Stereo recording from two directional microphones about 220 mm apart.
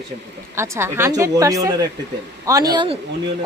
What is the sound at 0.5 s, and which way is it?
A woman's voice, 10° right (ahead or behind).